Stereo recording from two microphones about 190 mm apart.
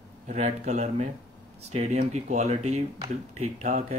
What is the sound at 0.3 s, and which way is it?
Speech, 35° right (ahead or behind).